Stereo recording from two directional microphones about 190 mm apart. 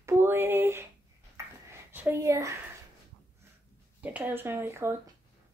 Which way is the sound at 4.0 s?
10° right (ahead or behind).